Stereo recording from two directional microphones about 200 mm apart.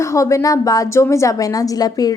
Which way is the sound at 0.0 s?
15° left (ahead or behind).